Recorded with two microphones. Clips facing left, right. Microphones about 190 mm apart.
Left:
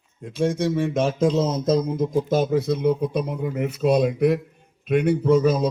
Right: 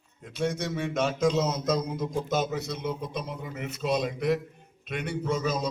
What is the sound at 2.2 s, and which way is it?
A man's voice, 55° left (ahead or behind).